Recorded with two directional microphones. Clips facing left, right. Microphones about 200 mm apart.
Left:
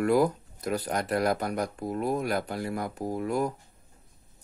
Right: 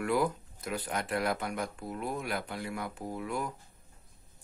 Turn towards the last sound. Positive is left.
turn(degrees=40)  # may be behind; listen again after turning